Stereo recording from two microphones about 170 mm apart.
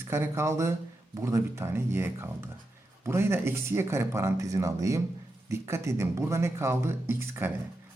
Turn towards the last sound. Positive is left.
turn(degrees=-15)  # may be behind; listen again after turning